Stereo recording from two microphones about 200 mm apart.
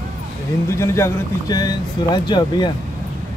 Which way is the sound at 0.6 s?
15° left (ahead or behind).